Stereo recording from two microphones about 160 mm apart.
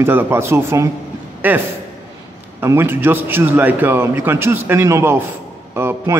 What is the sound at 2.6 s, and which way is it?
A man's voice, 15° right (ahead or behind).